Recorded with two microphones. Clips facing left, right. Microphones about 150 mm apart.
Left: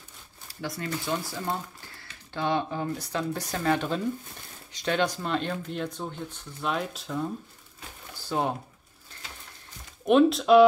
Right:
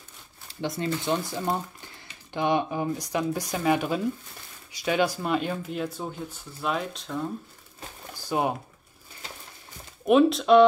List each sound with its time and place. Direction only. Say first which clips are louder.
0.5 s speech: right 4 dB; 25° right (ahead or behind); by 7.2 s centre (ahead or behind)
8.3 s speech: right 2 dB; 10° right (ahead or behind)
10.0 s speech: right 1 dB; centre (ahead or behind)